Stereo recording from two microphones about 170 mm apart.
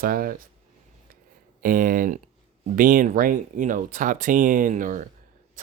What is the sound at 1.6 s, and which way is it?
Speech, 55° right (ahead or behind).